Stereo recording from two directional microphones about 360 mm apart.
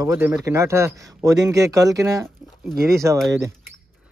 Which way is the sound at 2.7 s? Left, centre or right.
Right.